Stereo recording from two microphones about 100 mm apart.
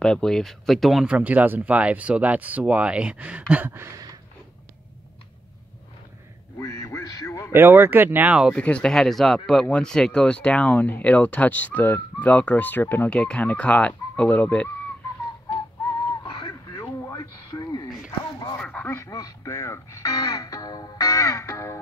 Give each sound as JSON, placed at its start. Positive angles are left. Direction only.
{"t": 0.0, "sound": "speech", "side_deg": 5}
{"t": 1.1, "sound": "speech", "side_deg": -15}
{"t": 6.6, "sound": "music", "side_deg": 30}
{"t": 7.5, "sound": "speech", "side_deg": -20}
{"t": 8.5, "sound": "speech", "side_deg": 10}
{"t": 16.3, "sound": "a sound", "side_deg": 50}
{"t": 17.1, "sound": "a sound", "side_deg": 35}
{"t": 18.6, "sound": "quack", "side_deg": 10}
{"t": 18.9, "sound": "a sound", "side_deg": 30}
{"t": 19.1, "sound": "music", "side_deg": 35}